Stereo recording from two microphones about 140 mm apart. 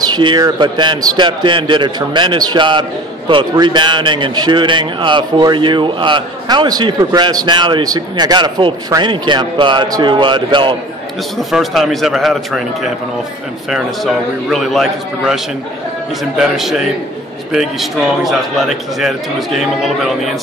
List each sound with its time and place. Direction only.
0.1 s a man's voice: 35° right (ahead or behind)
11.3 s a man's voice: centre (ahead or behind)